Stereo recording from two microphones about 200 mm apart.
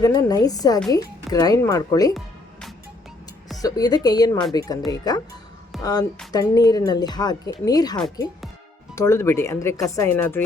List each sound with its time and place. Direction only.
0.0 s speech: 20° left (ahead or behind)
2.1 s music: centre (ahead or behind)
3.6 s speech: 20° left (ahead or behind)
9.0 s speech: 15° left (ahead or behind)